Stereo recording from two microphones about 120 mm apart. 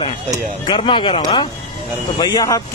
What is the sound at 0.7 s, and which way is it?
Speech, 45° left (ahead or behind).